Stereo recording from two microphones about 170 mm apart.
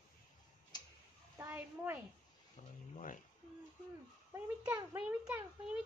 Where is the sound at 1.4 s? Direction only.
10° right (ahead or behind).